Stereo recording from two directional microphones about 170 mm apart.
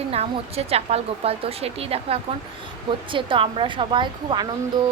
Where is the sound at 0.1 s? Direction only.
35° right (ahead or behind).